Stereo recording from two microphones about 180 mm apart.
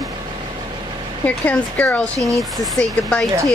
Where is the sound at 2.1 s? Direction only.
20° right (ahead or behind).